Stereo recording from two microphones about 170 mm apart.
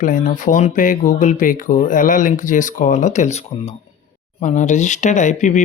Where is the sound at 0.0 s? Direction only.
50° left (ahead or behind).